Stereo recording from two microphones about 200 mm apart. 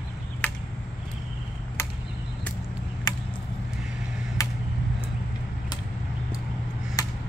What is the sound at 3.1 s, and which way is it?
Chop, 20° left (ahead or behind).